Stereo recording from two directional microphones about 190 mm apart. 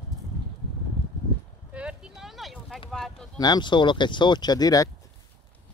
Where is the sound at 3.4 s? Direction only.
20° left (ahead or behind).